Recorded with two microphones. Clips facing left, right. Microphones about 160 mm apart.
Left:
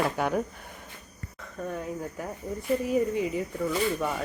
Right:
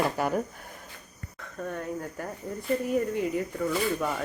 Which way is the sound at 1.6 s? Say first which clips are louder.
Even; 5° left (ahead or behind).